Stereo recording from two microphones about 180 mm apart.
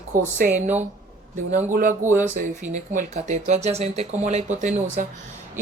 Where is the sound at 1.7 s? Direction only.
45° right (ahead or behind).